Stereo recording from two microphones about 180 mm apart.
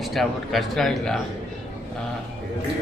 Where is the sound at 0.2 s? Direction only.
Centre (ahead or behind).